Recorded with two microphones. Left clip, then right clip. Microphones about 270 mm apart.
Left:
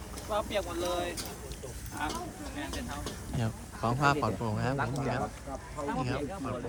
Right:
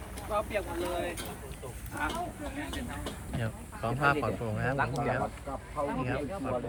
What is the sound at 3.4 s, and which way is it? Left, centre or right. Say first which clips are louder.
Speech: left 2 dB; centre.